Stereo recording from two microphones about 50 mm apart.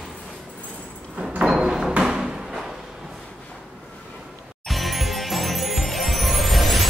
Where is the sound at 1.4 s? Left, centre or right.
Centre.